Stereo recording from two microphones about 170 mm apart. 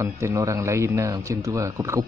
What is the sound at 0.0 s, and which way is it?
Speech, 15° right (ahead or behind).